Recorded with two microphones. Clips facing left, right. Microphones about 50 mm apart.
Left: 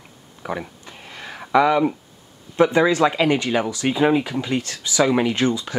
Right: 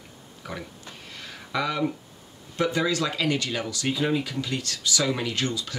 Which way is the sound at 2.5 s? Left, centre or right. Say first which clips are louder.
Left 8 dB; left.